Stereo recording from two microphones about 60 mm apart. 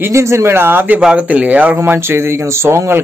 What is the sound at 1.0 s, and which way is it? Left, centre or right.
Speech, right.